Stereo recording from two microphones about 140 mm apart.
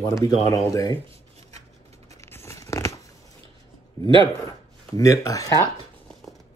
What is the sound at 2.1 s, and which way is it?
Tearing, 20° left (ahead or behind).